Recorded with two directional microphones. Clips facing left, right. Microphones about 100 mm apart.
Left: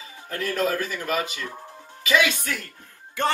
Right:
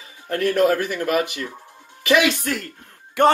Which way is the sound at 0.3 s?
55° right (ahead or behind).